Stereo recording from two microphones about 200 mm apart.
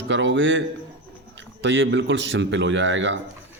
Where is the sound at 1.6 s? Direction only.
65° right (ahead or behind).